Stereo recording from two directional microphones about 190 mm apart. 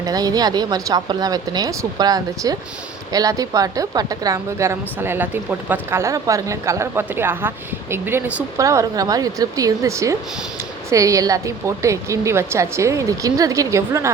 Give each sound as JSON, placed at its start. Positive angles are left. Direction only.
{"t": 0.0, "sound": "a woman's voice", "side_deg": -20}